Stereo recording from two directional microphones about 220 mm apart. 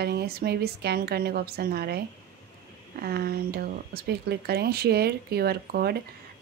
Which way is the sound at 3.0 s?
45° right (ahead or behind).